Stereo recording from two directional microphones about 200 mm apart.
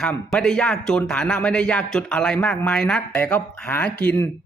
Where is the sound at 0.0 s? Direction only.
5° left (ahead or behind).